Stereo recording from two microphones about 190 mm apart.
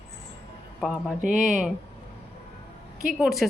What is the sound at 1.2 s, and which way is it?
Speech, 40° right (ahead or behind).